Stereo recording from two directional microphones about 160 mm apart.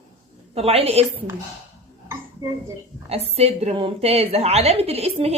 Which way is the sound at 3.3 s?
40° right (ahead or behind).